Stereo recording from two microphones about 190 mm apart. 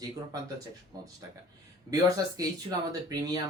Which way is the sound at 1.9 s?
20° right (ahead or behind).